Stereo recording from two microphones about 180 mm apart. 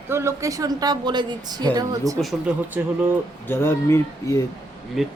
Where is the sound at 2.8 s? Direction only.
10° right (ahead or behind).